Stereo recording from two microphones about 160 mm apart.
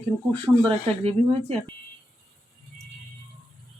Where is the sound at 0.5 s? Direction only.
10° right (ahead or behind).